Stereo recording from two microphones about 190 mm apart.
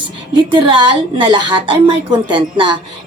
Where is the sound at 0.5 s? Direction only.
25° right (ahead or behind).